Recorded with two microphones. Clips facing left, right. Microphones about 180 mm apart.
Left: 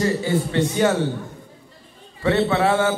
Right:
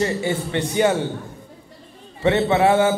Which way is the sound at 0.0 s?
20° right (ahead or behind).